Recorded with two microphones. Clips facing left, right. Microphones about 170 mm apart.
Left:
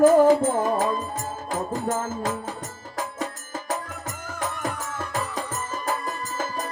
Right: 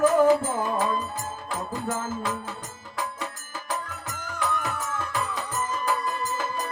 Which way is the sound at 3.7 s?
45° left (ahead or behind).